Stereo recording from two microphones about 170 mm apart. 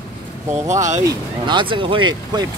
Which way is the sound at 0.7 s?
45° right (ahead or behind).